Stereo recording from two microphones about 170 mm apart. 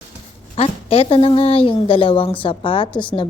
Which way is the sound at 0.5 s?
35° left (ahead or behind).